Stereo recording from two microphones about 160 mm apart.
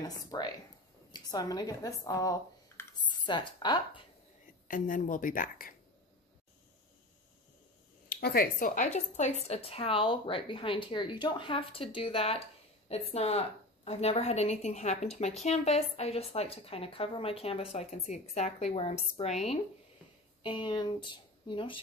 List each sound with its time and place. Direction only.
0.0 s speech: 25° left (ahead or behind)
4.6 s a woman's voice: 55° left (ahead or behind)
8.2 s a woman's voice: 70° left (ahead or behind); by 19.6 s 45° left (ahead or behind)
20.4 s speech: 30° left (ahead or behind)